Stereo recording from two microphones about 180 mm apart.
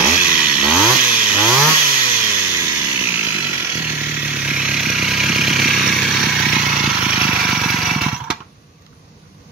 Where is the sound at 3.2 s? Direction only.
10° right (ahead or behind).